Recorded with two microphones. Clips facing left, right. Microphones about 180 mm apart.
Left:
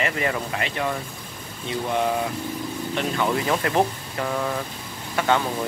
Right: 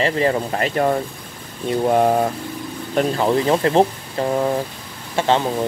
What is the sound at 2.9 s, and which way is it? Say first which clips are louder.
Speech: right 7 dB; 35° right (ahead or behind).